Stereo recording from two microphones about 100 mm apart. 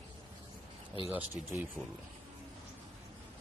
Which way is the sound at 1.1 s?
15° right (ahead or behind).